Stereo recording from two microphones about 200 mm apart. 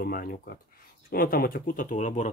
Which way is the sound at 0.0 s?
45° left (ahead or behind).